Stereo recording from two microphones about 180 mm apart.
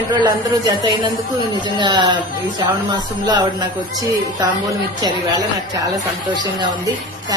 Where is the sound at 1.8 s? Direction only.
25° right (ahead or behind).